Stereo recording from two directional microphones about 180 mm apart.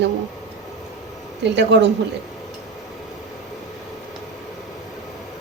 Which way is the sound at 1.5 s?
75° right (ahead or behind).